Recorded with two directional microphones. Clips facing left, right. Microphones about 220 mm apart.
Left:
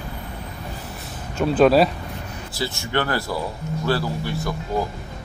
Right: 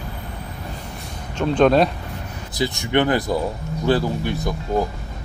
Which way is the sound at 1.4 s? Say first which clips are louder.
Even; 5° left (ahead or behind).